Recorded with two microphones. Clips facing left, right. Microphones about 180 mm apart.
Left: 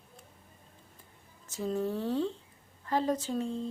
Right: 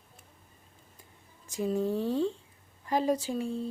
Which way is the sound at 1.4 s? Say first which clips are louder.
Right 3 dB; 15° right (ahead or behind).